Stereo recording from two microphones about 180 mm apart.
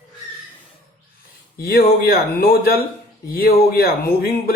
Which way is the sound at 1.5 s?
60° left (ahead or behind).